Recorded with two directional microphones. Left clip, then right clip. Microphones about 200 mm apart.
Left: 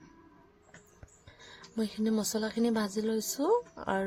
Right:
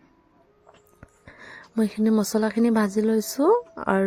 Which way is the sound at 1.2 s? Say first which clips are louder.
Right 9 dB; 35° right (ahead or behind).